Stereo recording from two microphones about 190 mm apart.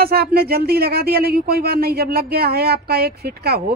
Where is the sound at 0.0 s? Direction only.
55° right (ahead or behind).